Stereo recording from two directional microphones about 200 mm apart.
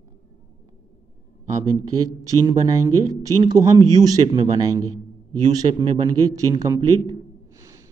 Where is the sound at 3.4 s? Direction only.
20° right (ahead or behind).